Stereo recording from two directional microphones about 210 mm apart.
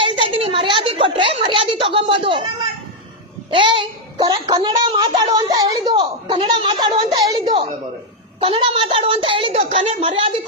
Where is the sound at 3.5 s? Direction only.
25° right (ahead or behind).